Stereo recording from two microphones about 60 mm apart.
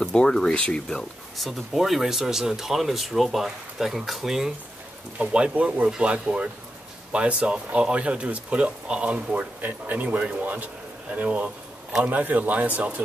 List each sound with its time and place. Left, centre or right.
0.0 s speech: centre
0.8 s speech: centre
1.5 s speech: centre
5.2 s speech: centre